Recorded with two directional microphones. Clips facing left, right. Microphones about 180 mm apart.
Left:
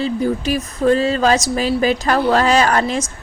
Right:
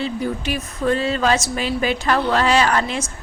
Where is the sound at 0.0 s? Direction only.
40° left (ahead or behind).